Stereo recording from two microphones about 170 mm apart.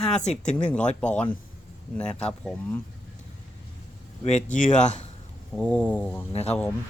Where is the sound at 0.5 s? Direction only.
10° left (ahead or behind).